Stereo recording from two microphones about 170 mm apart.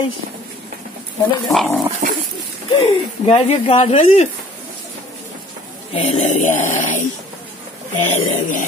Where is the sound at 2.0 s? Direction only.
50° right (ahead or behind).